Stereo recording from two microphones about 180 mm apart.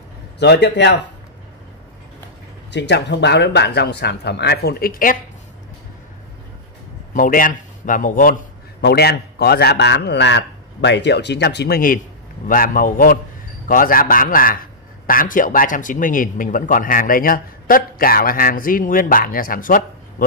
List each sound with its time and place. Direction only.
0.4 s a man's voice: 70° left (ahead or behind)
2.7 s a man's voice: 75° left (ahead or behind); by 5.2 s 50° left (ahead or behind)
7.2 s a man's voice: 50° left (ahead or behind)
8.8 s a man's voice: 65° left (ahead or behind)